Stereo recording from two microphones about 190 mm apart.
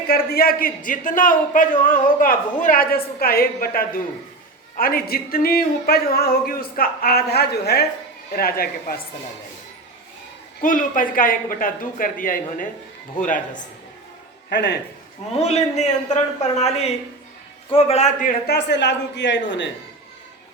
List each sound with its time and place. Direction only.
0.1 s a man's voice: 50° left (ahead or behind)
10.6 s a man's voice: 45° left (ahead or behind)
14.5 s a man's voice: 65° left (ahead or behind)
15.4 s a man's voice: 35° left (ahead or behind); by 19.6 s 70° left (ahead or behind)